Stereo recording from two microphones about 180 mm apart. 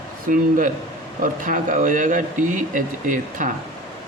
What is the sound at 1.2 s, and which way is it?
Speech, 50° right (ahead or behind).